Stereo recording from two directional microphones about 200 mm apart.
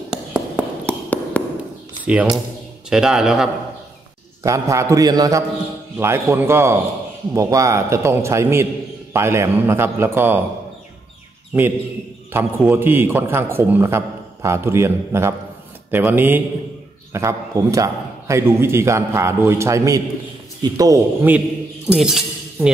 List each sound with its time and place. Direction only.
0.1 s tap: 5° right (ahead or behind)
1.3 s a sound: 5° left (ahead or behind)
2.0 s a man's voice: 5° right (ahead or behind)
4.4 s a man's voice: 15° right (ahead or behind)
11.5 s a man's voice: 5° right (ahead or behind)
21.8 s chink: 5° right (ahead or behind)